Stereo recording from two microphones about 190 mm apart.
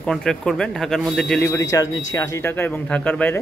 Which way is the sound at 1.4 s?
15° left (ahead or behind).